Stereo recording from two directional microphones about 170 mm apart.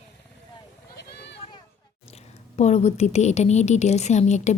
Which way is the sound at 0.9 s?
90° left.